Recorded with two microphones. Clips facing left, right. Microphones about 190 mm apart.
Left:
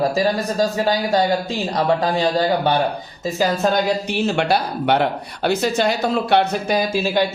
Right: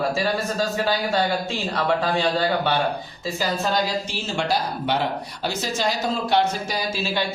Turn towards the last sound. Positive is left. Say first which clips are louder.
# left 7 dB
turn(degrees=45)  # may be behind; listen again after turning